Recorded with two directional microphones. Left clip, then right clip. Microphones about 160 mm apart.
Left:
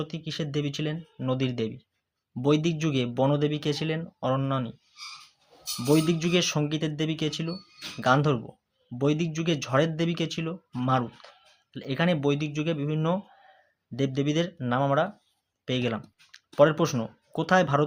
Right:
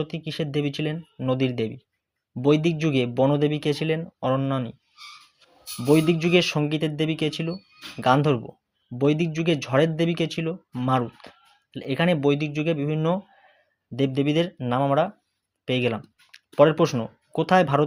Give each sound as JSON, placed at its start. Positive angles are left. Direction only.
{"t": 0.0, "sound": "speech", "side_deg": -20}
{"t": 5.8, "sound": "speech", "side_deg": -20}
{"t": 15.6, "sound": "typing", "side_deg": -20}
{"t": 16.6, "sound": "speech", "side_deg": -20}